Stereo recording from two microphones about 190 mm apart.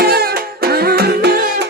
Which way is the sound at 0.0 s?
55° right (ahead or behind).